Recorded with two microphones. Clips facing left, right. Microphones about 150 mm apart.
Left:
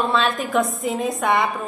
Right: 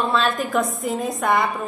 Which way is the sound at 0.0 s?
Centre (ahead or behind).